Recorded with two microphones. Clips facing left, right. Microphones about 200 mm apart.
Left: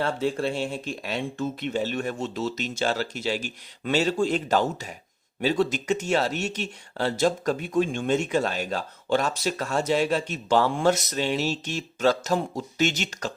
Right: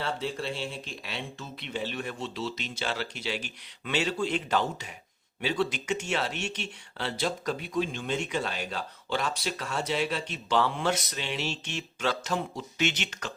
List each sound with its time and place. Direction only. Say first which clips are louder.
0.0 s speech: left 7 dB; 50° left (ahead or behind)